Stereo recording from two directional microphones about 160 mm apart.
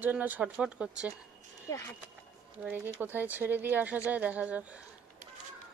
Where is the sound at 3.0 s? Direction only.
10° right (ahead or behind).